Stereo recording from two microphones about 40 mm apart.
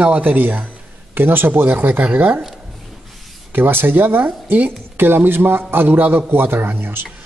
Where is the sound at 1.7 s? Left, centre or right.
Right.